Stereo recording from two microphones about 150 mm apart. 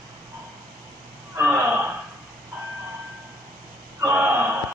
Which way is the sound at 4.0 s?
15° right (ahead or behind).